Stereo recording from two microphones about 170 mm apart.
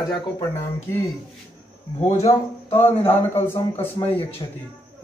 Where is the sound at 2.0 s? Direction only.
40° left (ahead or behind).